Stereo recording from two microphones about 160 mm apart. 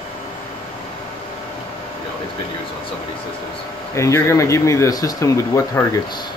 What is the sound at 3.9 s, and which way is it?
Speech, 20° left (ahead or behind).